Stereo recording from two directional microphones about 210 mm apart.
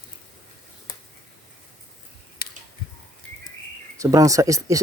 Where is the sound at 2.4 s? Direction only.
45° left (ahead or behind).